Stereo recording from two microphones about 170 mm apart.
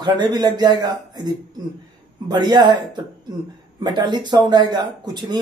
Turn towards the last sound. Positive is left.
turn(degrees=-25)  # may be behind; listen again after turning